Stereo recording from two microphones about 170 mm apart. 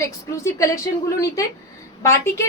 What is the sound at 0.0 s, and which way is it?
Speech, 15° left (ahead or behind).